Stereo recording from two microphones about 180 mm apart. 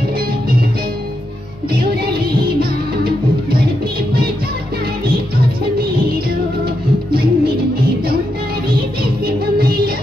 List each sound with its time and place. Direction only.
7.1 s music: 60° right (ahead or behind)
9.2 s music: 60° right (ahead or behind)